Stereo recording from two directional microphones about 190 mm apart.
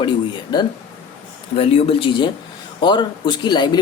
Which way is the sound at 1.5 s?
30° left (ahead or behind).